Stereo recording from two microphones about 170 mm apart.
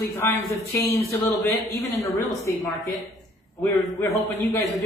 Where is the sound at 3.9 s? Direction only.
20° left (ahead or behind).